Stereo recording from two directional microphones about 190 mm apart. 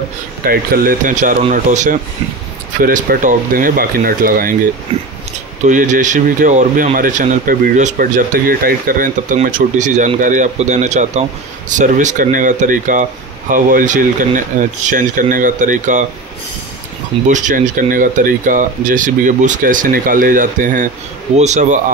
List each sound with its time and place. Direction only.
0.5 s speech: 45° right (ahead or behind)
5.7 s speech: 40° right (ahead or behind)
17.3 s speech: 40° right (ahead or behind)